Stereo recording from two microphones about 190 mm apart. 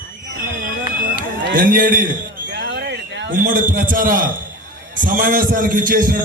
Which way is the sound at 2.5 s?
70° right (ahead or behind).